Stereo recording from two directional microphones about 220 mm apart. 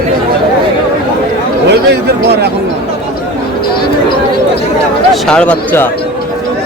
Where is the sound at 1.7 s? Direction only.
50° right (ahead or behind).